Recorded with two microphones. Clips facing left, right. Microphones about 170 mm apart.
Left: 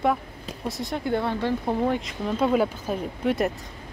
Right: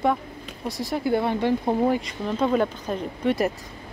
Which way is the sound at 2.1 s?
5° left (ahead or behind).